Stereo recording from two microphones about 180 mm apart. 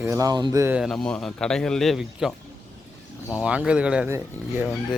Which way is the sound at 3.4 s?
5° right (ahead or behind).